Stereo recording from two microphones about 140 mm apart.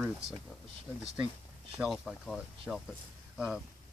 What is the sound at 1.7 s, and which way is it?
Speech, centre (ahead or behind).